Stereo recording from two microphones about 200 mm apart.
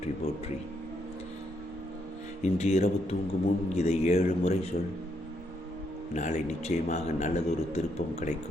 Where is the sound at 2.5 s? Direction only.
35° left (ahead or behind).